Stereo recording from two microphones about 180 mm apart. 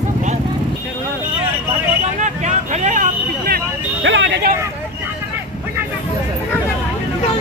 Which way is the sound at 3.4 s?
75° right (ahead or behind).